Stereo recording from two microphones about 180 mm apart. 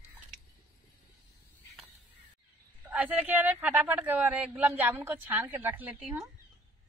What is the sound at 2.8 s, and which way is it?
Speech, 10° right (ahead or behind).